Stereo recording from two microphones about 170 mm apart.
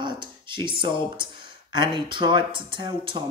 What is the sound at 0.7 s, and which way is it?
Speech, 30° right (ahead or behind).